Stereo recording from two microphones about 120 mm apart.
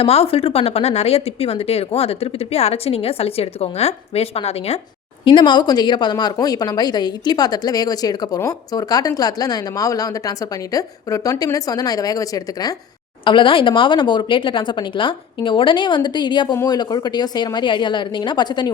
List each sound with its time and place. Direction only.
0.0 s speech: 55° left (ahead or behind)
5.2 s a woman's voice: 40° left (ahead or behind)
13.2 s a woman's voice: 45° left (ahead or behind)